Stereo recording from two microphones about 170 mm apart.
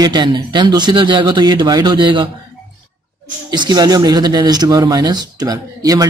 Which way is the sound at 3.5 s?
25° right (ahead or behind).